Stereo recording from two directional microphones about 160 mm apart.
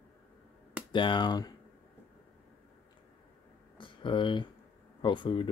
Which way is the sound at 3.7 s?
30° left (ahead or behind).